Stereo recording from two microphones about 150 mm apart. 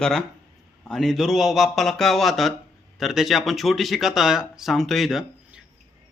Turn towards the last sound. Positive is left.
turn(degrees=-5)  # may be behind; listen again after turning